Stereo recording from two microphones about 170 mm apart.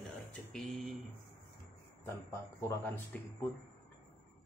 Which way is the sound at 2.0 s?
15° left (ahead or behind).